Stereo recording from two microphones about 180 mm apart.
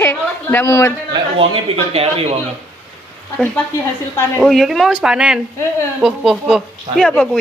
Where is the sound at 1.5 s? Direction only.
30° right (ahead or behind).